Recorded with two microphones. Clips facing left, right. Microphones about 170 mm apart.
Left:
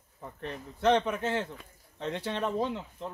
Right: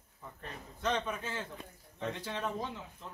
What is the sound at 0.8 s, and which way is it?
Speech, 70° left (ahead or behind).